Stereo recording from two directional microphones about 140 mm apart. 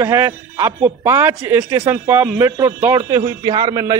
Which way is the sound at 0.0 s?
20° right (ahead or behind).